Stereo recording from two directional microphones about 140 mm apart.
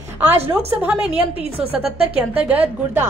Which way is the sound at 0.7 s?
10° right (ahead or behind).